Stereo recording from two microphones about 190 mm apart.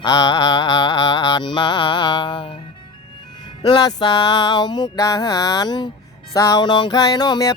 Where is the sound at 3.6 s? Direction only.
25° left (ahead or behind).